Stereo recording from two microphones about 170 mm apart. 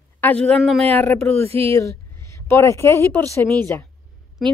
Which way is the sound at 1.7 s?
15° left (ahead or behind).